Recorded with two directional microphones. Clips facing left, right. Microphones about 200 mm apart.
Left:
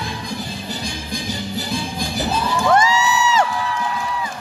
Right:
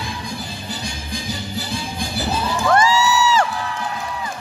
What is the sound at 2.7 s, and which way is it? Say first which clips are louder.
Music: right 1 dB; 20° left (ahead or behind).